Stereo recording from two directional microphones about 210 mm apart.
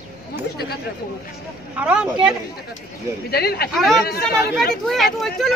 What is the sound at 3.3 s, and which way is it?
Speech, 50° left (ahead or behind).